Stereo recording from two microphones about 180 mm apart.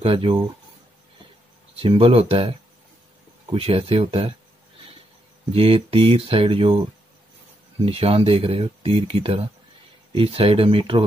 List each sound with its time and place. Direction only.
0.0 s speech: 30° right (ahead or behind)
1.8 s speech: 30° right (ahead or behind)
3.5 s speech: 30° right (ahead or behind)
5.5 s speech: 35° right (ahead or behind)
7.8 s speech: 35° right (ahead or behind)